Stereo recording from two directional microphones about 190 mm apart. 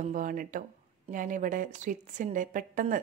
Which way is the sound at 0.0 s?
45° right (ahead or behind).